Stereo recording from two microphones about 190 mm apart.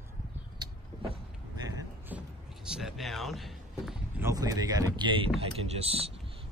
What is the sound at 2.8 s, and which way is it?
A man's voice, centre (ahead or behind).